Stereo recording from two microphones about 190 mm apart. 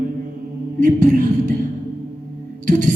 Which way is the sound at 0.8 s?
45° right (ahead or behind).